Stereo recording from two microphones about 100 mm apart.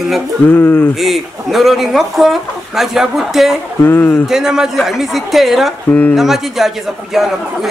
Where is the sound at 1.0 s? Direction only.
Centre (ahead or behind).